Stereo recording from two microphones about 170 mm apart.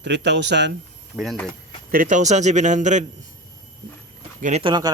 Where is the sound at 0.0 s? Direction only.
90° right.